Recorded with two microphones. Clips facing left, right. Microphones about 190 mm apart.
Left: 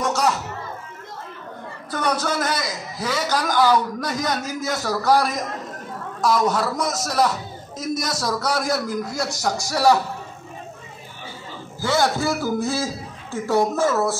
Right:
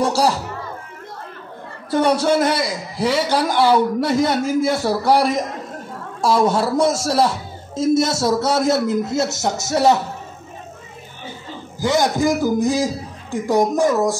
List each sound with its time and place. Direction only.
0.0 s speech: 30° right (ahead or behind)
1.9 s a man's voice: 30° right (ahead or behind)
11.8 s a man's voice: 15° right (ahead or behind)